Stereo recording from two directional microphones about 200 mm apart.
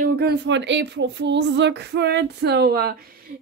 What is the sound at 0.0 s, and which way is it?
A woman's voice, 50° right (ahead or behind).